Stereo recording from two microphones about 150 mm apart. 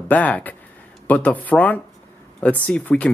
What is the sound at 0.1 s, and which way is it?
Speech, 10° left (ahead or behind).